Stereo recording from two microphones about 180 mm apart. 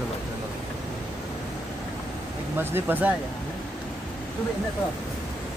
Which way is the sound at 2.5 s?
10° right (ahead or behind).